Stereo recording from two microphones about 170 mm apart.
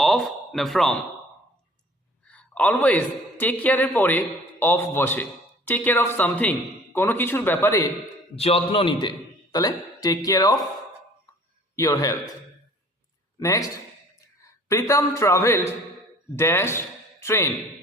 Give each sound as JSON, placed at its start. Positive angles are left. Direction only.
{"t": 0.0, "sound": "speech", "side_deg": 0}
{"t": 2.2, "sound": "a man's voice", "side_deg": 10}
{"t": 8.4, "sound": "a man's voice", "side_deg": 35}
{"t": 11.8, "sound": "a man's voice", "side_deg": 20}
{"t": 13.4, "sound": "a man's voice", "side_deg": 20}